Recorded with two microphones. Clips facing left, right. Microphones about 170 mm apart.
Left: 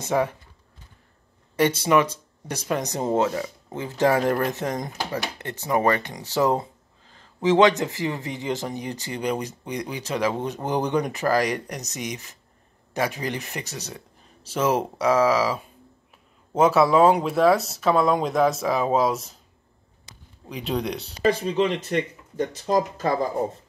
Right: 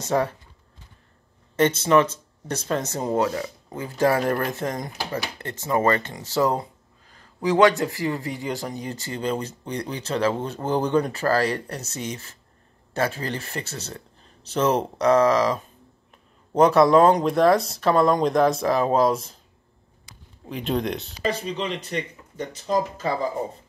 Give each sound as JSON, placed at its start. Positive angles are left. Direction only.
{"t": 0.0, "sound": "speech", "side_deg": 15}
{"t": 1.6, "sound": "speech", "side_deg": 10}
{"t": 20.4, "sound": "speech", "side_deg": 0}
{"t": 21.2, "sound": "speech", "side_deg": 50}